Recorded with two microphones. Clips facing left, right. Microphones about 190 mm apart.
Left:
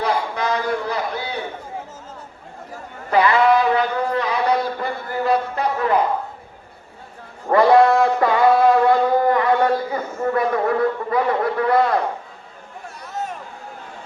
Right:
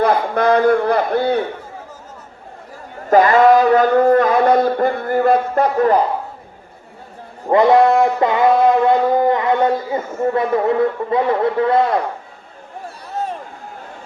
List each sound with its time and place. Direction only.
0.0 s a man's voice: 55° right (ahead or behind)
3.1 s mantra: 45° right (ahead or behind)
7.4 s music: 20° right (ahead or behind)
13.1 s a sound: 30° right (ahead or behind)